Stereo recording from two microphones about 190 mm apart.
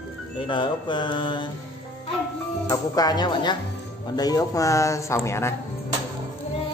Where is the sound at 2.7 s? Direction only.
20° left (ahead or behind).